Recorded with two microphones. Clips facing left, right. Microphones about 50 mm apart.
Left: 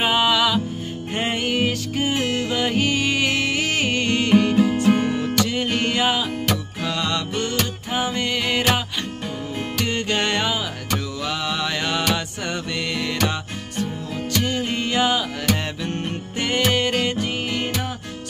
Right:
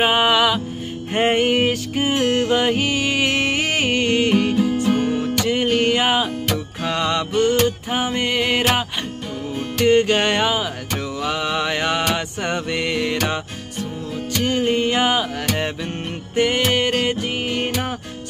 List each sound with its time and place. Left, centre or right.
0.0 s music: right
1.7 s music: centre
2.1 s music: right
2.7 s music: centre
3.3 s music: right; by 4.6 s centre
4.8 s music: centre
5.1 s music: centre
5.4 s music: right
9.8 s mantra: right
12.2 s music: right